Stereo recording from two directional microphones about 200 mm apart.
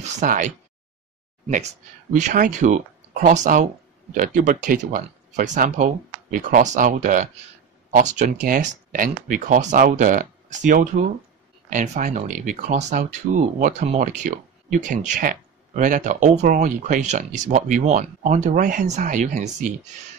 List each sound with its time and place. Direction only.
0.0 s speech: 40° right (ahead or behind)
2.1 s speech: 40° right (ahead or behind)